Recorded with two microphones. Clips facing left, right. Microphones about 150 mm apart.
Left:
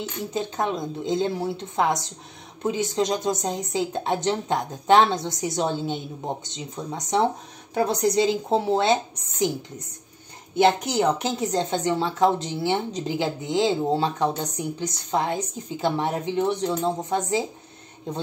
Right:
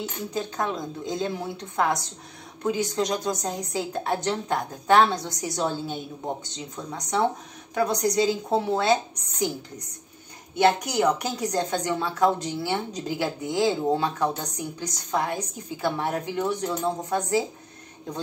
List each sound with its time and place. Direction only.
0.3 s speech: 20° left (ahead or behind)